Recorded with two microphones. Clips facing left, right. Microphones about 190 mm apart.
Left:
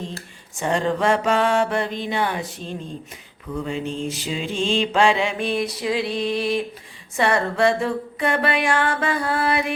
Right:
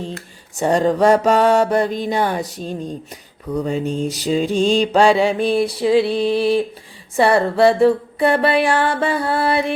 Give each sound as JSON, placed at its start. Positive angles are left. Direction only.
{"t": 0.6, "sound": "mantra", "side_deg": -40}